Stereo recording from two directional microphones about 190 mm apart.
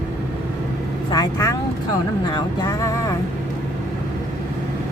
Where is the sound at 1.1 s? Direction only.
20° left (ahead or behind).